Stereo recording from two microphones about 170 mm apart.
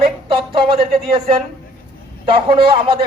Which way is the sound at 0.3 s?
30° right (ahead or behind).